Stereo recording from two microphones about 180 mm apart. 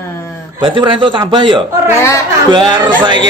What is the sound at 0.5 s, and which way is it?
Speech, 25° right (ahead or behind).